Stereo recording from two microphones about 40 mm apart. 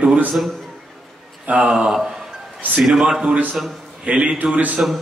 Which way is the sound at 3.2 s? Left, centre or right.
Right.